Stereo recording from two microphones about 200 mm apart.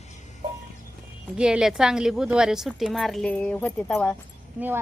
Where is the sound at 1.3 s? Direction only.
5° right (ahead or behind).